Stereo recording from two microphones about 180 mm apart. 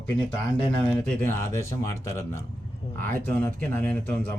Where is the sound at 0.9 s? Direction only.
10° left (ahead or behind).